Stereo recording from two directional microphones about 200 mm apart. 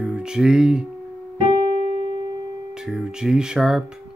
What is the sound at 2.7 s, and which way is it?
Speech, 5° right (ahead or behind).